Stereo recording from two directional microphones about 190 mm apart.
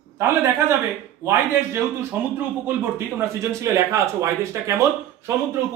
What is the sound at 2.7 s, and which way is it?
A man's voice, 10° right (ahead or behind).